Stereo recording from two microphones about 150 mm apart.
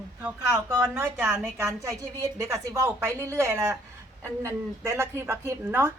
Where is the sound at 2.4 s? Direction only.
20° right (ahead or behind).